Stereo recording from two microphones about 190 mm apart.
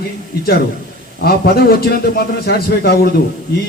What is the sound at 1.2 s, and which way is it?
A man's voice, 55° left (ahead or behind).